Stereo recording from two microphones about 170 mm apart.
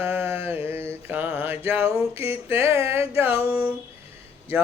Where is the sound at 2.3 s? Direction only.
15° right (ahead or behind).